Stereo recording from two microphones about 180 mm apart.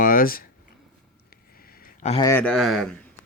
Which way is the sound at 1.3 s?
55° left (ahead or behind).